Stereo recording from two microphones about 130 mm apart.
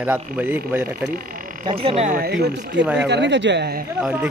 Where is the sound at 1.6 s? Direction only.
45° right (ahead or behind); by 2.7 s 65° right (ahead or behind).